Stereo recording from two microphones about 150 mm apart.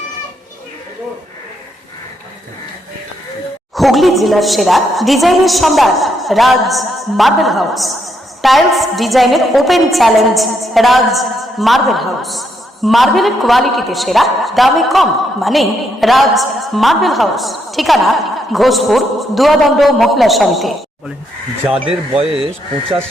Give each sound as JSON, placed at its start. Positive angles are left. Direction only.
{"t": 3.8, "sound": "a woman's voice", "side_deg": 0}
{"t": 21.8, "sound": "speech", "side_deg": -40}